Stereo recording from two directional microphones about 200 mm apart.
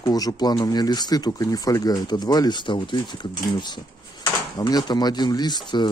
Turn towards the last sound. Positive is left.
turn(degrees=20)  # may be behind; listen again after turning